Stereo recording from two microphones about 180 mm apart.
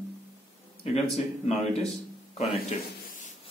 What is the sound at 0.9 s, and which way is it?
Speech, 35° left (ahead or behind).